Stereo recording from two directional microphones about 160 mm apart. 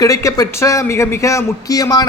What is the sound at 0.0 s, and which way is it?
A man's voice, 20° left (ahead or behind).